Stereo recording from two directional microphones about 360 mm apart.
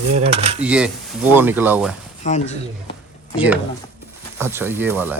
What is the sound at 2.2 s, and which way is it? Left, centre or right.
Speech, centre.